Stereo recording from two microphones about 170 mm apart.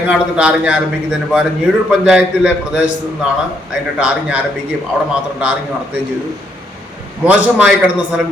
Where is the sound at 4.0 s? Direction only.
5° right (ahead or behind).